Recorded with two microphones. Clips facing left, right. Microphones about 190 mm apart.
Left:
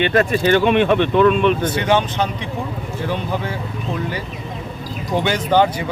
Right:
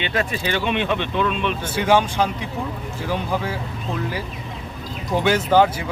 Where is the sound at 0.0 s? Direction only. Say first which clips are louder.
Left 8 dB; 50° left (ahead or behind).